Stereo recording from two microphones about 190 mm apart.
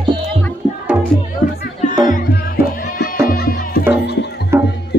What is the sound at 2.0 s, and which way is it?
Music, 55° left (ahead or behind).